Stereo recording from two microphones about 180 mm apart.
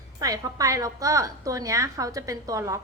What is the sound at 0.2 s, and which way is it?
A woman's voice, 20° right (ahead or behind).